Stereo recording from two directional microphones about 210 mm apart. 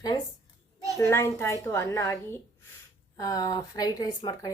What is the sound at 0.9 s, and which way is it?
Speech, 15° left (ahead or behind).